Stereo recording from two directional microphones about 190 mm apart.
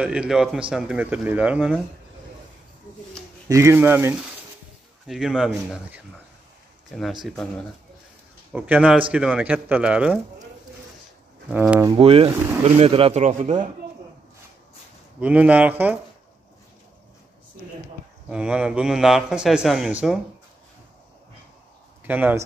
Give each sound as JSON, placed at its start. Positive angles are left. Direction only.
{"t": 0.0, "sound": "speech", "side_deg": -5}
{"t": 3.4, "sound": "speech", "side_deg": -15}
{"t": 8.5, "sound": "speech", "side_deg": -5}
{"t": 11.5, "sound": "speech", "side_deg": -5}
{"t": 11.9, "sound": "speech", "side_deg": -30}
{"t": 15.1, "sound": "speech", "side_deg": -5}
{"t": 18.3, "sound": "speech", "side_deg": -5}
{"t": 22.0, "sound": "speech", "side_deg": -10}